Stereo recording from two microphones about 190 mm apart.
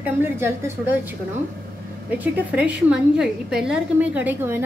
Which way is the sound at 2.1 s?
5° right (ahead or behind).